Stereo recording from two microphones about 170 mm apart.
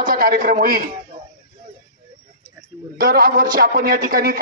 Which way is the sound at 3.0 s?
60° right (ahead or behind).